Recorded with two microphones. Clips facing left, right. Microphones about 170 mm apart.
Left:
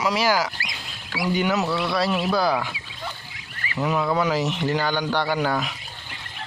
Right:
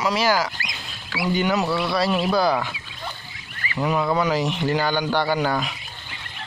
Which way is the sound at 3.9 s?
5° right (ahead or behind).